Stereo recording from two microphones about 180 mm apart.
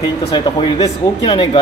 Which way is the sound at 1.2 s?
30° left (ahead or behind).